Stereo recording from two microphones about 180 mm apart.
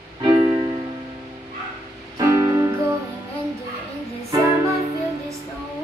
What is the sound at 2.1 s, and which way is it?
Music, 15° right (ahead or behind).